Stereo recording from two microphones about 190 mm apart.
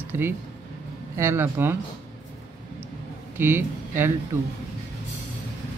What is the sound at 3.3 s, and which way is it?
Speech, 10° right (ahead or behind).